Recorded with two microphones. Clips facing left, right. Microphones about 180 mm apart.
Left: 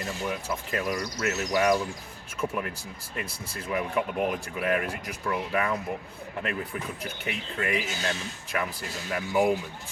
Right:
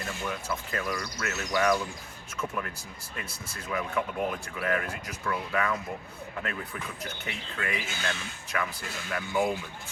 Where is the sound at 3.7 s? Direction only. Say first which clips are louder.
Left 3 dB; 15° left (ahead or behind).